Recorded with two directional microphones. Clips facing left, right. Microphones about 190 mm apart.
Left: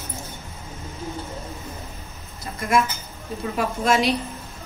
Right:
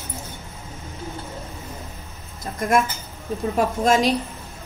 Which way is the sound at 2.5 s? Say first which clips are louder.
Right 2 dB; 50° right (ahead or behind).